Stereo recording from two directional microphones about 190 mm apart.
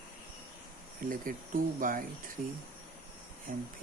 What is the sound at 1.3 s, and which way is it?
Speech, 50° right (ahead or behind).